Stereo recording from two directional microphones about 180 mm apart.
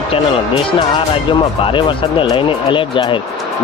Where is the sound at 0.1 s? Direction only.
25° left (ahead or behind).